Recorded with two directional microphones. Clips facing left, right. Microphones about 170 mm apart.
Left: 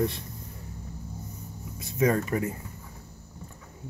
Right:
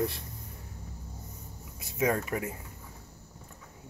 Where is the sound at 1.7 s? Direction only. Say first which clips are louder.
Left 4 dB; 10° right (ahead or behind).